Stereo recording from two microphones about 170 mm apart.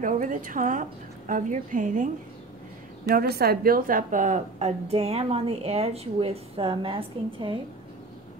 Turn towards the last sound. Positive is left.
turn(degrees=-30)  # may be behind; listen again after turning